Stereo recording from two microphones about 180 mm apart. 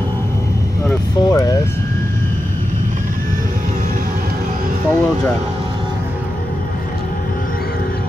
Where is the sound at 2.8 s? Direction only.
50° right (ahead or behind).